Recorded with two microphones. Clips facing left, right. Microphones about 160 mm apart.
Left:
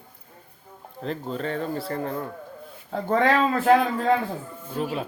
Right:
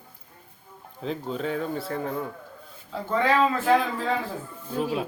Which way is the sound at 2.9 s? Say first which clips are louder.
Left 4 dB; 55° left (ahead or behind).